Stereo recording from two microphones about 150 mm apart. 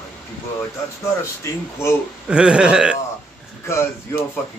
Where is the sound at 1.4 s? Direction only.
20° left (ahead or behind).